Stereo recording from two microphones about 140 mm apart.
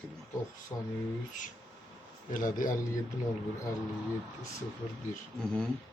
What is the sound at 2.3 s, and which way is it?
Speech, 70° left (ahead or behind).